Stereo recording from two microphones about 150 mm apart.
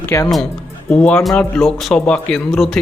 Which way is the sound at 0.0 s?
15° left (ahead or behind).